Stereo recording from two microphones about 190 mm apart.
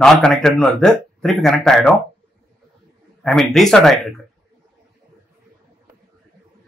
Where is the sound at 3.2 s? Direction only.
Centre (ahead or behind).